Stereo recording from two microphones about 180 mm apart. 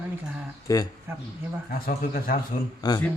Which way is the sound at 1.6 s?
55° left (ahead or behind).